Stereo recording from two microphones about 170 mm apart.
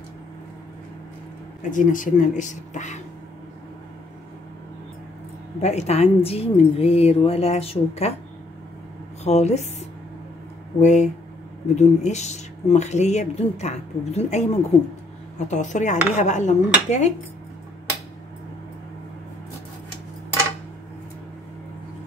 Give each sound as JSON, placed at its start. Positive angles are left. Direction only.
{"t": 1.6, "sound": "speech", "side_deg": 50}
{"t": 5.6, "sound": "speech", "side_deg": 40}
{"t": 9.2, "sound": "speech", "side_deg": 40}